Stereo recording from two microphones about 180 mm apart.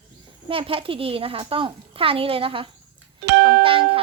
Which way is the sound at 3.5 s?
30° right (ahead or behind).